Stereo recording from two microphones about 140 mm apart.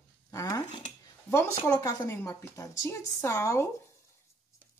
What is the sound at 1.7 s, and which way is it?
A woman's voice, 25° left (ahead or behind).